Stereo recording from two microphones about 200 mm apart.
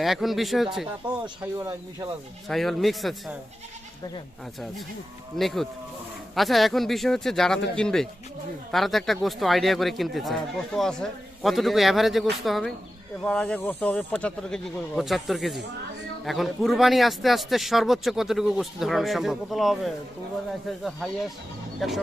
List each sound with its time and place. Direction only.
0.0 s speech: centre (ahead or behind)
1.5 s speech: 15° right (ahead or behind)
2.5 s speech: centre (ahead or behind)
5.4 s speech: centre (ahead or behind)